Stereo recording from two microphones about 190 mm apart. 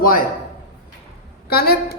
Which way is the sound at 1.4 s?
55° left (ahead or behind).